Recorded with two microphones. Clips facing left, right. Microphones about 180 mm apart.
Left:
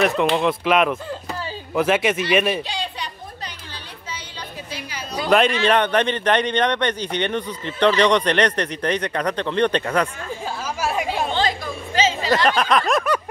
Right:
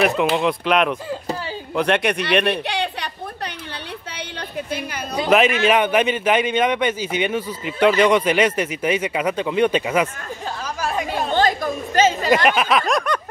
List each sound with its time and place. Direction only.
0.0 s speech: centre (ahead or behind)
2.5 s a sound: 65° right (ahead or behind)
5.3 s speech: 5° right (ahead or behind)
10.8 s chatter: 10° left (ahead or behind)
11.3 s chatter: 50° right (ahead or behind)
12.4 s speech: 5° right (ahead or behind)